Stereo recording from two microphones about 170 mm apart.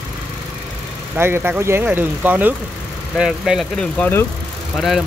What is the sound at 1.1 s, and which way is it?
Speech, 15° right (ahead or behind).